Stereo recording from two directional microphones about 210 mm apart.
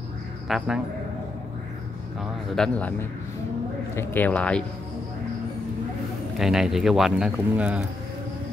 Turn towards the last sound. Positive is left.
turn(degrees=-5)  # may be behind; listen again after turning